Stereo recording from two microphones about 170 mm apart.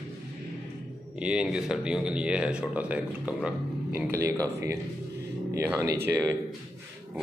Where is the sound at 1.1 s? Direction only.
5° right (ahead or behind).